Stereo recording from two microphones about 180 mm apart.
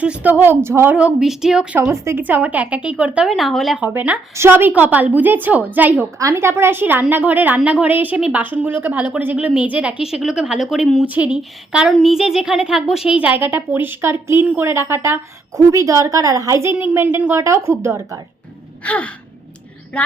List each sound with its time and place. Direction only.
0.0 s a woman's voice: 10° right (ahead or behind)
1.8 s a woman's voice: 15° right (ahead or behind)
18.8 s gasp: 5° left (ahead or behind)